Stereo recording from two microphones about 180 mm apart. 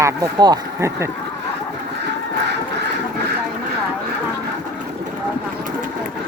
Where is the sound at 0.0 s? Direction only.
20° right (ahead or behind).